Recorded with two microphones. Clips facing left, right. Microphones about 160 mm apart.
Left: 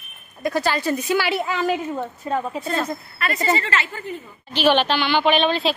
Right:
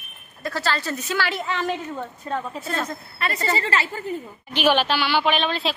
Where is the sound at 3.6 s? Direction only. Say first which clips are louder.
Right 1 dB; 35° right (ahead or behind).